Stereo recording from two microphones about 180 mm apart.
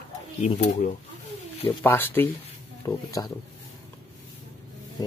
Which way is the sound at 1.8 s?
10° left (ahead or behind).